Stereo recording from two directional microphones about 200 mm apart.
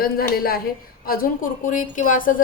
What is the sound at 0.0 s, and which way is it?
A woman's voice, 50° left (ahead or behind).